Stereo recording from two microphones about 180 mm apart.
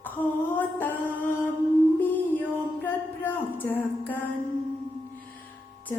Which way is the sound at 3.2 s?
10° left (ahead or behind).